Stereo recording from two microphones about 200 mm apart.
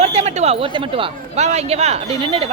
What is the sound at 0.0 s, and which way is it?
A man's voice, 30° right (ahead or behind).